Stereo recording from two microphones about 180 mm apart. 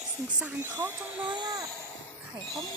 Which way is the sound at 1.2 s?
20° right (ahead or behind).